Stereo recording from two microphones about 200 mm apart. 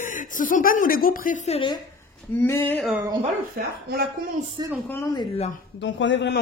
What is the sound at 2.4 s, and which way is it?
Speech, 10° left (ahead or behind).